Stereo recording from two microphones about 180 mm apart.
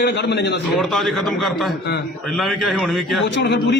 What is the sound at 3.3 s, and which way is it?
Speech, 75° left (ahead or behind).